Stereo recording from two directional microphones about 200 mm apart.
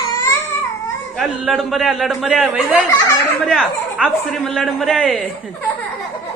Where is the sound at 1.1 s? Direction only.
Centre (ahead or behind).